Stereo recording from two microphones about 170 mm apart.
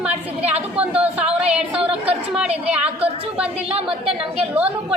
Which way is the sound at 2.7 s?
5° right (ahead or behind).